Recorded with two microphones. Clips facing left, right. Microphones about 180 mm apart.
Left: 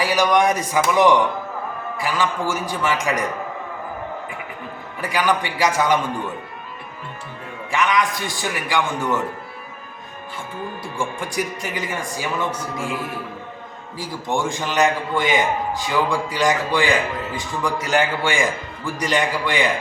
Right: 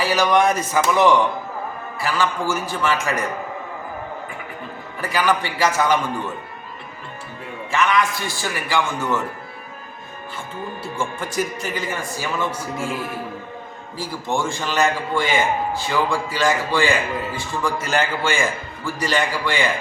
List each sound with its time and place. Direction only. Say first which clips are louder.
0.0 s a man's voice: even; 15° left (ahead or behind)
4.9 s a man's voice: even; 15° left (ahead or behind)
7.7 s a man's voice: right 1 dB; 15° left (ahead or behind)
10.9 s a man's voice: right 1 dB; 15° left (ahead or behind)
14.0 s a man's voice: even; 15° left (ahead or behind)